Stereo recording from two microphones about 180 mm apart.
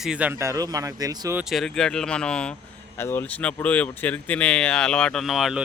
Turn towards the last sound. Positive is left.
turn(degrees=0)  # may be behind; listen again after turning